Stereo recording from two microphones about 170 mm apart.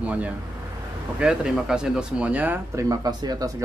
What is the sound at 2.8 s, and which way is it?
Speech, 20° right (ahead or behind).